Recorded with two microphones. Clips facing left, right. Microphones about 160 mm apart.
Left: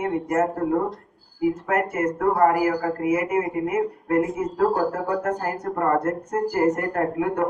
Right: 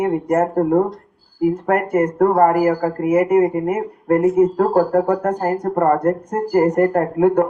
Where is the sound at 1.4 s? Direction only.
60° right (ahead or behind).